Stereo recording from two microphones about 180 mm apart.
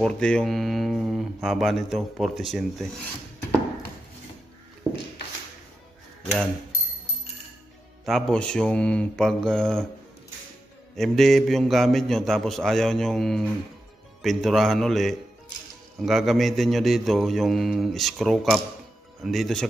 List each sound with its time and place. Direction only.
0.0 s speech: 5° left (ahead or behind)
4.9 s a sound: 15° right (ahead or behind)
8.0 s speech: 5° left (ahead or behind)
11.0 s speech: centre (ahead or behind)